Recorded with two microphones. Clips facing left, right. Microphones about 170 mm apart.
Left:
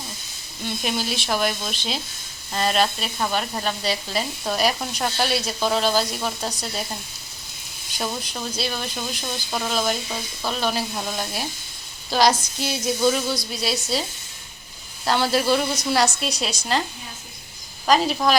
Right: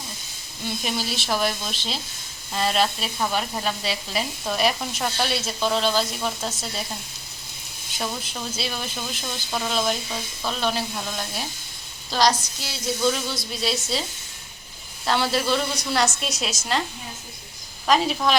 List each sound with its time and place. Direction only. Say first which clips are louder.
0.8 s sizzle: left 3 dB; centre (ahead or behind)
7.9 s sizzle: left 2 dB; centre (ahead or behind)
12.1 s a sound: left 2 dB; 10° left (ahead or behind)
13.3 s sizzle: left 1 dB; centre (ahead or behind)
15.0 s sizzle: left 2 dB; centre (ahead or behind)
17.8 s sizzle: left 1 dB; centre (ahead or behind)